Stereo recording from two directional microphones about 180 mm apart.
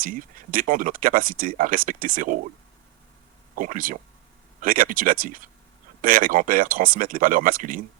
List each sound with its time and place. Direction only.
0.0 s speech: 50° right (ahead or behind)
3.5 s speech: 50° right (ahead or behind)